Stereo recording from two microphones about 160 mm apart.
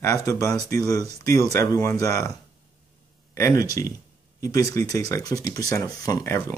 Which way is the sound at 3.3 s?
20° left (ahead or behind).